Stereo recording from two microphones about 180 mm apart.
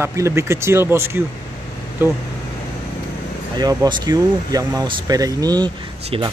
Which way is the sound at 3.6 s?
20° right (ahead or behind).